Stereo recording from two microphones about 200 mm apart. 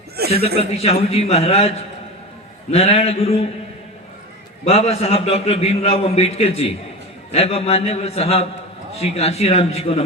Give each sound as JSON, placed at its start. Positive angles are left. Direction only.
{"t": 0.3, "sound": "a man's voice", "side_deg": 30}
{"t": 4.6, "sound": "a man's voice", "side_deg": 30}